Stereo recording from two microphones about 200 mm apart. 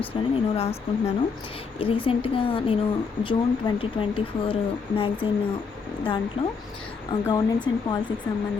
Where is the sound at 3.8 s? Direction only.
25° left (ahead or behind).